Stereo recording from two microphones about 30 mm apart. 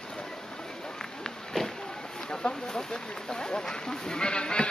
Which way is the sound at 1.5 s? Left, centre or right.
Centre.